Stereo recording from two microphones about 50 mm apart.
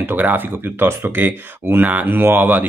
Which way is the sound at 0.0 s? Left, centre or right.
Right.